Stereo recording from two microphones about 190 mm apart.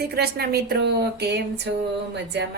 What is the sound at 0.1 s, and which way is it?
A woman's voice, 55° right (ahead or behind).